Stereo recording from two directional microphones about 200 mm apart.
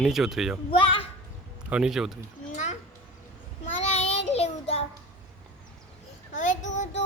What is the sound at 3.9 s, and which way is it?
Child singing, 35° left (ahead or behind).